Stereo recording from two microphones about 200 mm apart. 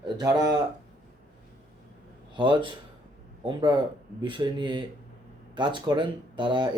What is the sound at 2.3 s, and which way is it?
A man's voice, 25° right (ahead or behind).